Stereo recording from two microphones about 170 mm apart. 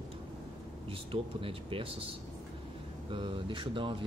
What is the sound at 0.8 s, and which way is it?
Speech, 30° right (ahead or behind).